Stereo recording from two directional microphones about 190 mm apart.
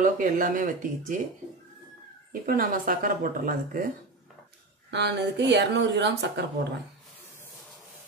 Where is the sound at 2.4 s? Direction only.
45° right (ahead or behind).